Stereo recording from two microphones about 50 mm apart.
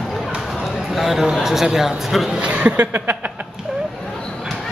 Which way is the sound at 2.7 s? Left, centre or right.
Right.